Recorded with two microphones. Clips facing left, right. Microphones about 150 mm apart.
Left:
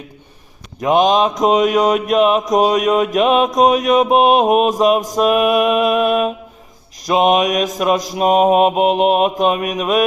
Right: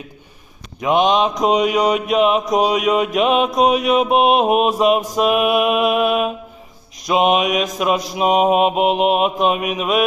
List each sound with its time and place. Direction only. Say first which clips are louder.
0.8 s mantra: left 2 dB; 40° left (ahead or behind)
4.8 s music: left 2 dB; 40° left (ahead or behind)
7.1 s mantra: left 2 dB; 40° left (ahead or behind)
7.8 s music: left 3 dB; 40° left (ahead or behind)
8.2 s mantra: left 2 dB; 45° left (ahead or behind)
9.0 s music: left 2 dB; 40° left (ahead or behind)